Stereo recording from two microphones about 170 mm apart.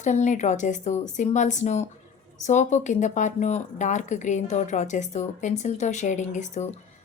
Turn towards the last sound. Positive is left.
turn(degrees=45)  # may be behind; listen again after turning